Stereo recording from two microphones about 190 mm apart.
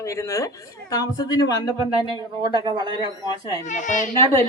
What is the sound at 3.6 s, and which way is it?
Speech, 40° left (ahead or behind).